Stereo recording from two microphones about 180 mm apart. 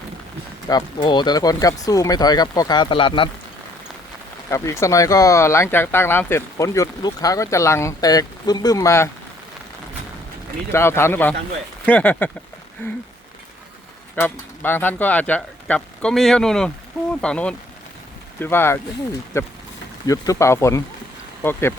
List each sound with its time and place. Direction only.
0.7 s speech: 25° left (ahead or behind)
4.4 s speech: 15° left (ahead or behind)
10.7 s speech: 15° left (ahead or behind)
14.2 s speech: 10° left (ahead or behind)